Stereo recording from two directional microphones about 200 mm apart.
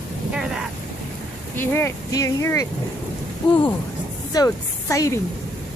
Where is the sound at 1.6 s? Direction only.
10° left (ahead or behind).